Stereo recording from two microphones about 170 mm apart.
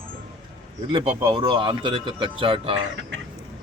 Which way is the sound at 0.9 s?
35° right (ahead or behind).